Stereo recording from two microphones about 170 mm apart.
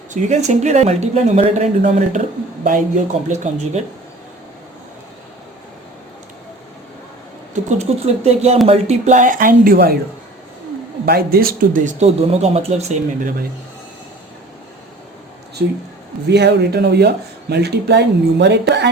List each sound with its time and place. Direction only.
0.1 s speech: 45° right (ahead or behind)
7.5 s speech: 40° right (ahead or behind); by 9.9 s 60° right (ahead or behind)
11.0 s speech: 65° right (ahead or behind); by 13.3 s 50° right (ahead or behind)
15.6 s speech: 75° right (ahead or behind)